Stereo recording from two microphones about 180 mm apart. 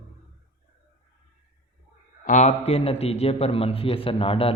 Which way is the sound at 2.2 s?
40° left (ahead or behind).